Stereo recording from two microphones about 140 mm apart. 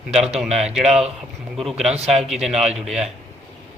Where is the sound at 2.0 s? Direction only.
Centre (ahead or behind).